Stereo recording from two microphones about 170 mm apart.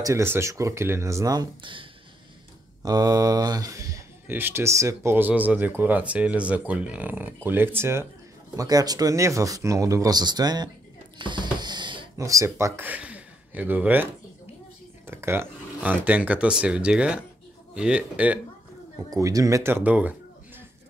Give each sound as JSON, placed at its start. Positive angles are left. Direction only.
{"t": 0.0, "sound": "speech", "side_deg": -15}
{"t": 11.1, "sound": "a sound", "side_deg": -25}
{"t": 12.2, "sound": "speech", "side_deg": -20}
{"t": 15.0, "sound": "speech", "side_deg": -15}
{"t": 19.0, "sound": "speech", "side_deg": -20}